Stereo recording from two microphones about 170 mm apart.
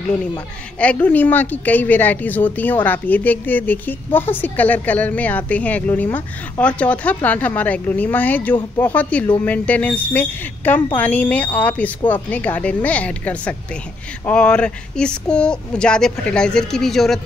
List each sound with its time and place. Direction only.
0.7 s a woman's voice: 10° left (ahead or behind)